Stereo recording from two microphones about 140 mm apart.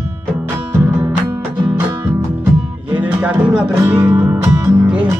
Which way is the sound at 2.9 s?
10° right (ahead or behind).